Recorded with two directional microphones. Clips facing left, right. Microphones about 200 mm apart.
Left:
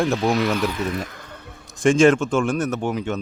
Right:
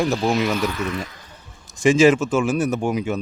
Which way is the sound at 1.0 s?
55° left (ahead or behind).